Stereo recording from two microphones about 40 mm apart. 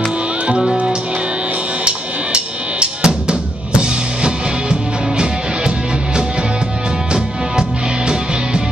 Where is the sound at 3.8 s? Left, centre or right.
Centre.